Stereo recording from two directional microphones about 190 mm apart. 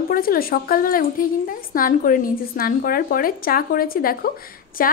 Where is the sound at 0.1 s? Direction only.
50° left (ahead or behind).